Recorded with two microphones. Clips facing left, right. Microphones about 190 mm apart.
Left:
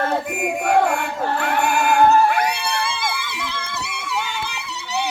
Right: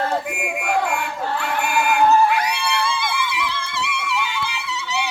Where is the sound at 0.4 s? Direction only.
40° left (ahead or behind).